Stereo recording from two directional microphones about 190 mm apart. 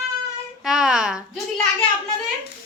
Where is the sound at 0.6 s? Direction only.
5° right (ahead or behind).